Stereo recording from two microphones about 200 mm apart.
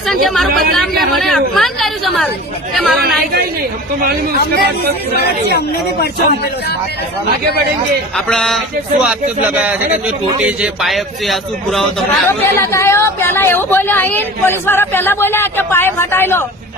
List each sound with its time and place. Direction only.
0.1 s a man's voice: centre (ahead or behind)
4.0 s speech: 50° right (ahead or behind)
5.5 s speech: 55° left (ahead or behind)
8.1 s a man's voice: centre (ahead or behind)
12.3 s a woman's voice: 15° left (ahead or behind)